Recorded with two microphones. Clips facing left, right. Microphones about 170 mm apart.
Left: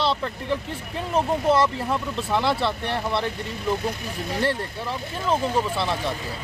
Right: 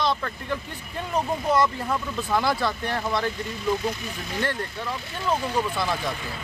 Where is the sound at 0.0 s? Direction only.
30° left (ahead or behind).